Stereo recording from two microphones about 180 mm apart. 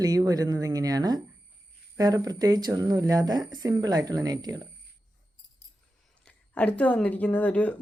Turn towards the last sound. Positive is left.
turn(degrees=10)  # may be behind; listen again after turning